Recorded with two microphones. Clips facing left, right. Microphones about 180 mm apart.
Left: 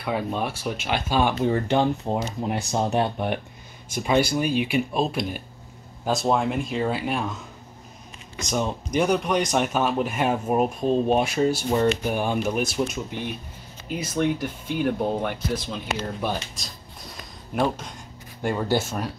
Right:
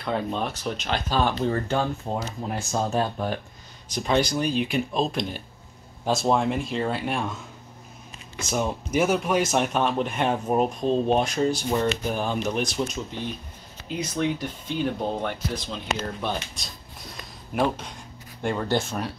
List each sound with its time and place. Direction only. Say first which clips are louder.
0.0 s speech: left 1 dB; 10° left (ahead or behind)
4.0 s speech: left 2 dB; 10° left (ahead or behind)
8.4 s speech: even; 5° right (ahead or behind)